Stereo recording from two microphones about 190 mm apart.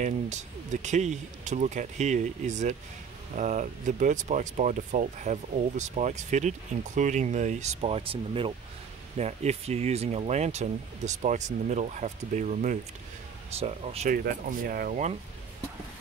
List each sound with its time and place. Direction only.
0.0 s speech: 40° right (ahead or behind)
14.1 s speech: 50° right (ahead or behind)